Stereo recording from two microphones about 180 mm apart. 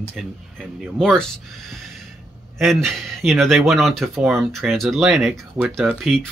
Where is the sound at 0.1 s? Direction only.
Centre (ahead or behind).